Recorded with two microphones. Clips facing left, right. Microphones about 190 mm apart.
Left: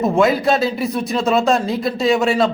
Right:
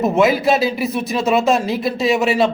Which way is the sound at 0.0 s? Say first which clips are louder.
Even; centre (ahead or behind).